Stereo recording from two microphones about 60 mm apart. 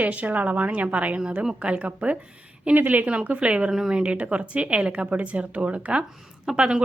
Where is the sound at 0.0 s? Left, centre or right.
Right.